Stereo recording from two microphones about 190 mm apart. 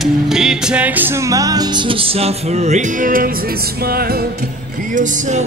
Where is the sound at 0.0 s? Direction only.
Centre (ahead or behind); by 4.5 s 55° right (ahead or behind).